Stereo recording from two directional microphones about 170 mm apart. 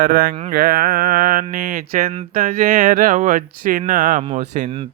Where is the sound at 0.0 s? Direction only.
60° right (ahead or behind); by 4.7 s 45° right (ahead or behind).